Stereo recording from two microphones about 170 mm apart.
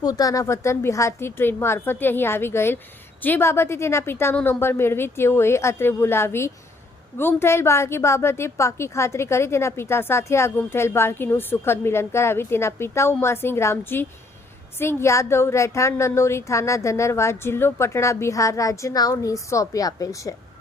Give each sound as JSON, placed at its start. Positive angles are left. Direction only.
{"t": 0.0, "sound": "a woman's voice", "side_deg": 20}